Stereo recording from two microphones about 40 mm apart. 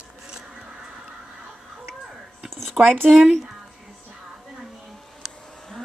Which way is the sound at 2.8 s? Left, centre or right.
Right.